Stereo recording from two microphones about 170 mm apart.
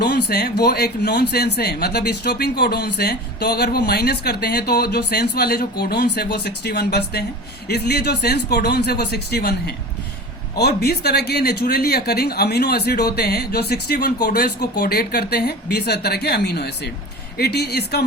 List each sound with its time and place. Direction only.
0.0 s speech: 70° left (ahead or behind)